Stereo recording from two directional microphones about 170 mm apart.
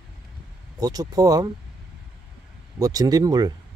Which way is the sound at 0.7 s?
20° right (ahead or behind).